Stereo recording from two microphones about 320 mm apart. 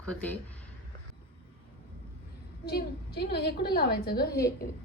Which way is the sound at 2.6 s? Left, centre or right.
Left.